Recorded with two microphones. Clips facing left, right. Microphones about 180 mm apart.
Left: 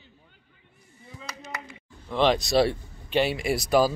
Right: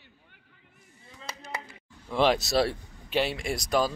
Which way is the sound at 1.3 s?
30° right (ahead or behind).